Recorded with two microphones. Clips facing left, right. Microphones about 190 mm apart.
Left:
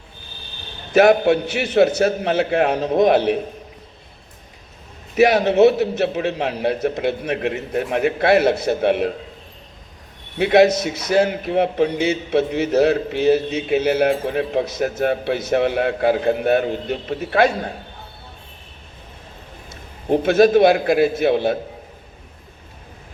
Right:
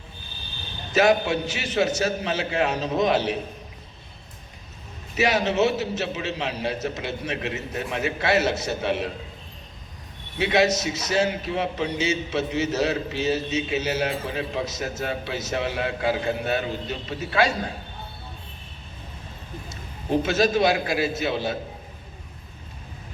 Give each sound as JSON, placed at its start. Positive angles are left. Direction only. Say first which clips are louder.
{"t": 0.9, "sound": "a man's voice", "louder": "left 7 dB", "side_deg": 55}
{"t": 5.1, "sound": "a man's voice", "louder": "left 8 dB", "side_deg": 55}
{"t": 10.3, "sound": "a man's voice", "louder": "left 7 dB", "side_deg": 55}
{"t": 19.7, "sound": "a man's voice", "louder": "left 5 dB", "side_deg": 55}